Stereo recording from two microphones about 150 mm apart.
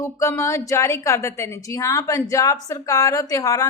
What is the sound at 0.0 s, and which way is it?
A woman's voice, 20° left (ahead or behind).